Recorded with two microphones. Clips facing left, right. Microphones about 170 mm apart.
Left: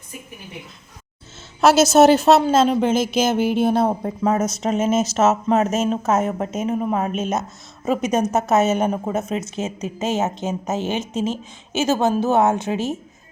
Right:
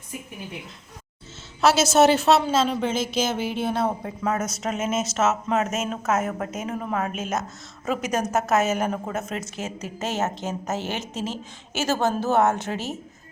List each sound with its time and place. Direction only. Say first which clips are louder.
1.6 s a woman's voice: left 5 dB; 45° left (ahead or behind); by 13.0 s 15° left (ahead or behind)